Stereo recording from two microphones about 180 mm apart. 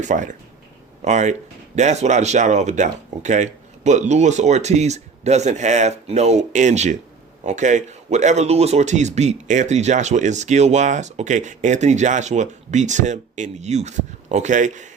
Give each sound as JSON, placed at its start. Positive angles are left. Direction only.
{"t": 0.0, "sound": "a man's voice", "side_deg": -45}